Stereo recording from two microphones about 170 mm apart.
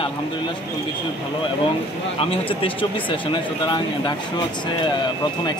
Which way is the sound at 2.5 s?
30° left (ahead or behind).